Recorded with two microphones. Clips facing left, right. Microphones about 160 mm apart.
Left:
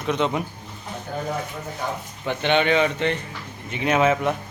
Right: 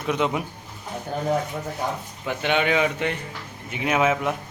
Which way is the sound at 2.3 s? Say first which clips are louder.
Left 2 dB; 5° right (ahead or behind).